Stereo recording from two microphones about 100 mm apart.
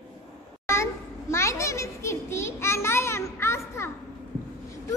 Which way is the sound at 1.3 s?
30° left (ahead or behind).